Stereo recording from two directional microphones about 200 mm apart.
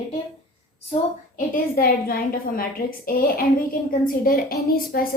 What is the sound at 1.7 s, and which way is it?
A woman's voice, 50° left (ahead or behind).